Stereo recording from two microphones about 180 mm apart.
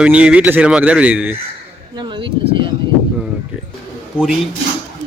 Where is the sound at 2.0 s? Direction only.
25° right (ahead or behind).